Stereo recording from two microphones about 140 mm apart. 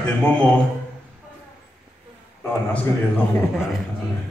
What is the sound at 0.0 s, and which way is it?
Speech, 5° left (ahead or behind).